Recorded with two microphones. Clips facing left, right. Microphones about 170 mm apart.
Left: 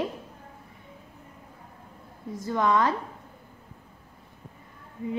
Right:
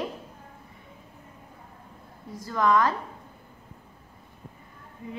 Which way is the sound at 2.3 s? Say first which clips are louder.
Right 1 dB; 25° left (ahead or behind).